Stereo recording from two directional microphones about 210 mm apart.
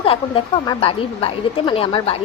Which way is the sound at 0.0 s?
25° left (ahead or behind).